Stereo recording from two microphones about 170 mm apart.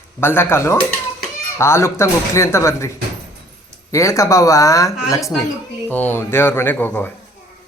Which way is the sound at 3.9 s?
20° left (ahead or behind).